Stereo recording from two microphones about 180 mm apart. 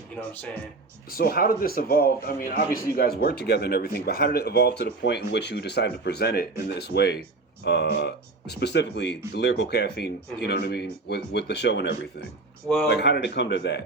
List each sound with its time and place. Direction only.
1.1 s a man's voice: 55° left (ahead or behind)